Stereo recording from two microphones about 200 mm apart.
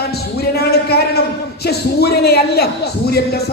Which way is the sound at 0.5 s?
55° left (ahead or behind).